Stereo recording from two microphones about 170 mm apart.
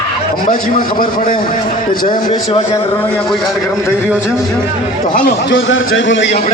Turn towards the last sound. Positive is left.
turn(degrees=90)